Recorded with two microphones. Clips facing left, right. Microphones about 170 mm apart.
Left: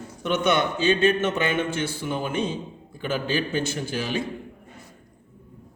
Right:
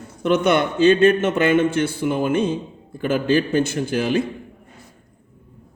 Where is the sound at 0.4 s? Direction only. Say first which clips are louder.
Right 5 dB; 55° right (ahead or behind).